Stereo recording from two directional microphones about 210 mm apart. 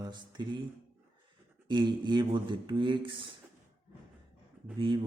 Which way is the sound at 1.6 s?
20° right (ahead or behind).